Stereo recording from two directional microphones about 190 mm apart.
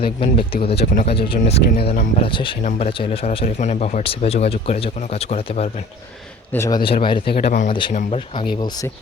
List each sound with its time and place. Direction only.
0.0 s speech: 30° left (ahead or behind)
0.9 s speech: 40° left (ahead or behind)
1.7 s speech: 50° left (ahead or behind)
2.2 s speech: 25° left (ahead or behind)
6.5 s speech: 15° left (ahead or behind)
7.3 s speech: 45° left (ahead or behind)
7.7 s speech: 25° left (ahead or behind)
8.5 s speech: 20° left (ahead or behind)